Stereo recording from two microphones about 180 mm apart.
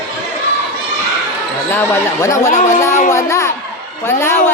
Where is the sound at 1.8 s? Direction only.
15° left (ahead or behind).